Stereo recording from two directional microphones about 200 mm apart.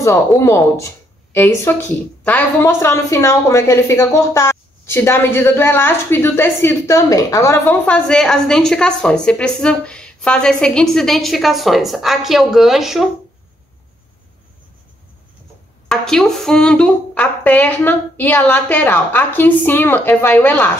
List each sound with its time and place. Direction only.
0.0 s a woman's voice: 15° left (ahead or behind); by 13.1 s centre (ahead or behind)
15.9 s a woman's voice: 5° left (ahead or behind)